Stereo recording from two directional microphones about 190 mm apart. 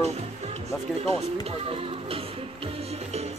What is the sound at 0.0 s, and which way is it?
Music, 35° right (ahead or behind).